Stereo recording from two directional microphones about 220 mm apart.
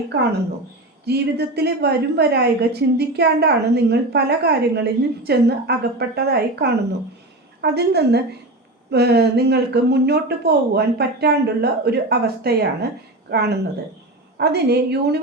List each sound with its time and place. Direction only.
1.0 s a woman's voice: 50° right (ahead or behind)